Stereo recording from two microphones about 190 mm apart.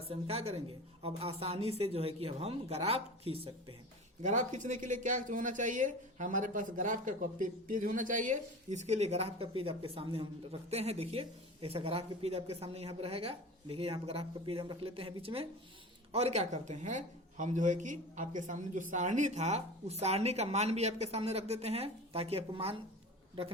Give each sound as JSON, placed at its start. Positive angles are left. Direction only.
{"t": 0.1, "sound": "speech", "side_deg": -30}
{"t": 4.2, "sound": "speech", "side_deg": -40}